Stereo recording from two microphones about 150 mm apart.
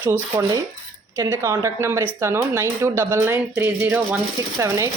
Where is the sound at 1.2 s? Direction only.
20° right (ahead or behind).